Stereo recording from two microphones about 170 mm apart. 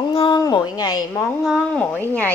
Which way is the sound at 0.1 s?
30° left (ahead or behind).